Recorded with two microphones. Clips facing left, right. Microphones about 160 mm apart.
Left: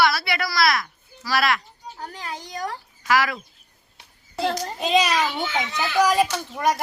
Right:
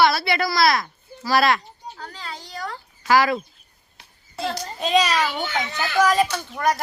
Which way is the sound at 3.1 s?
30° right (ahead or behind).